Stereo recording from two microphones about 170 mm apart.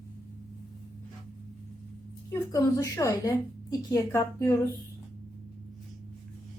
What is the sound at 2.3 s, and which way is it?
A woman's voice, 20° left (ahead or behind).